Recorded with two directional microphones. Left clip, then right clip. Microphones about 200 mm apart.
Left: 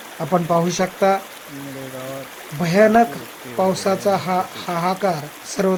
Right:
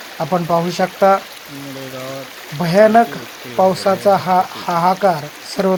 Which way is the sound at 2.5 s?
5° right (ahead or behind).